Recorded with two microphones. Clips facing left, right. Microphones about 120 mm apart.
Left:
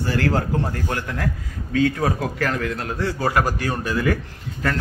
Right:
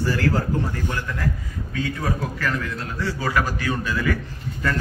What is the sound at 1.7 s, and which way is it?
A man's voice, 75° left (ahead or behind).